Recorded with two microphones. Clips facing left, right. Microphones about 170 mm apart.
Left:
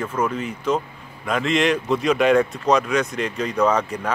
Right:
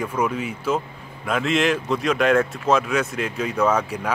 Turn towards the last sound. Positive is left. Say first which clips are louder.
# left 1 dB
turn(degrees=-10)  # may be behind; listen again after turning